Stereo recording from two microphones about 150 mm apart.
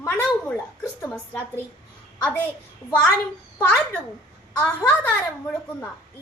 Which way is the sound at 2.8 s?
20° left (ahead or behind).